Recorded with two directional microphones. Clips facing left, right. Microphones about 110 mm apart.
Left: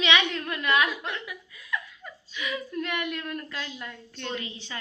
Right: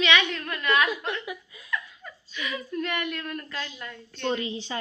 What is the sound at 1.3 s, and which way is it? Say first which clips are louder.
Speech: right 5 dB; 25° right (ahead or behind).